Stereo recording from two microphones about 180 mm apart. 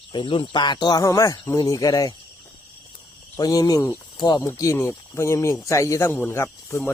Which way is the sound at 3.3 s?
20° left (ahead or behind).